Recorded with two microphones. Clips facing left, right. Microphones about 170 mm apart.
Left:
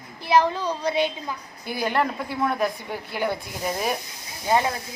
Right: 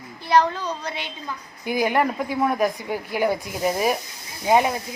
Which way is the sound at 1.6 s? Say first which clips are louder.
Right 3 dB; 15° right (ahead or behind).